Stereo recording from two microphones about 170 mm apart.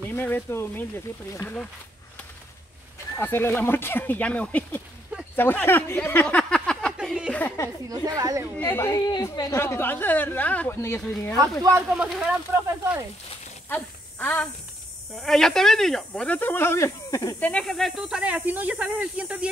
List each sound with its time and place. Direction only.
0.0 s speech: 10° left (ahead or behind)
3.2 s speech: 10° left (ahead or behind)
5.3 s a sound: 10° left (ahead or behind); by 7.3 s 5° right (ahead or behind)
7.3 s a sound: 15° left (ahead or behind)
8.2 s speech: 20° right (ahead or behind)
8.5 s speech: 15° left (ahead or behind)
11.9 s speech: 5° right (ahead or behind)
13.7 s speech: 10° left (ahead or behind)
17.4 s speech: 5° left (ahead or behind)